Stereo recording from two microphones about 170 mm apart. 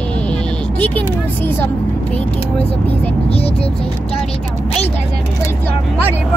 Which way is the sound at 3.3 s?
35° left (ahead or behind).